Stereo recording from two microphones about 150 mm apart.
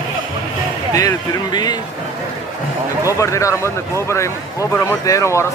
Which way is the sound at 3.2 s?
20° left (ahead or behind).